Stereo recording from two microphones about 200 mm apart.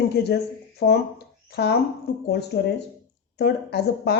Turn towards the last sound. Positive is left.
turn(degrees=55)  # may be behind; listen again after turning